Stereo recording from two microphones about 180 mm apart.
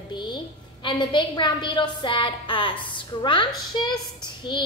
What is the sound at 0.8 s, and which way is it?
A woman's voice, 25° left (ahead or behind).